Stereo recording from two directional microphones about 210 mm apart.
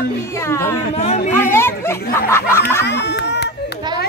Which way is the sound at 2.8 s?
55° left (ahead or behind).